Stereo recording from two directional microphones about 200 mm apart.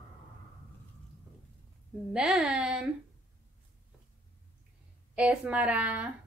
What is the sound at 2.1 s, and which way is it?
Speech, 5° right (ahead or behind).